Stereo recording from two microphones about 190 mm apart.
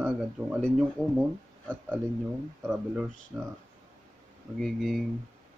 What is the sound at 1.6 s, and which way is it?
A man's voice, 10° right (ahead or behind).